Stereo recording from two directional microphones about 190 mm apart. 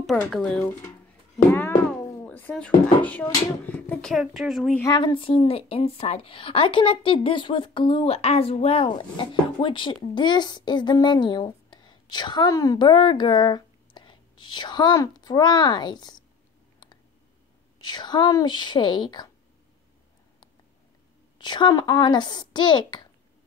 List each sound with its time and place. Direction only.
0.0 s speech: centre (ahead or behind)
4.7 s a woman's voice: 20° left (ahead or behind)
17.7 s a woman's voice: 25° left (ahead or behind)
21.4 s a woman's voice: 25° left (ahead or behind)